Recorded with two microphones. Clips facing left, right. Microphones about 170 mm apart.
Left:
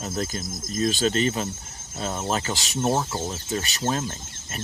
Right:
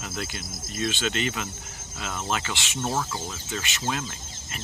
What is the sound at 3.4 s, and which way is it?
Speech, 35° left (ahead or behind).